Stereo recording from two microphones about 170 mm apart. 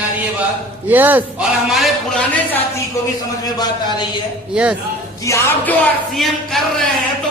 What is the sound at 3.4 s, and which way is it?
Speech, 25° left (ahead or behind).